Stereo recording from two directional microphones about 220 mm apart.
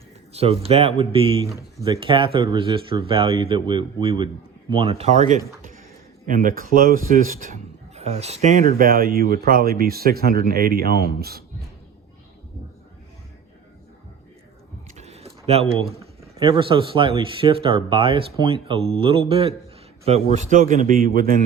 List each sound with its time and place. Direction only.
0.3 s a man's voice: 25° right (ahead or behind); by 11.4 s 45° right (ahead or behind)
14.9 s a sound: 30° right (ahead or behind)
16.2 s a man's voice: 25° right (ahead or behind); by 21.3 s 40° right (ahead or behind)